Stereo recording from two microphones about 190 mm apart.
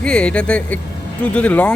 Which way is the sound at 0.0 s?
5° left (ahead or behind).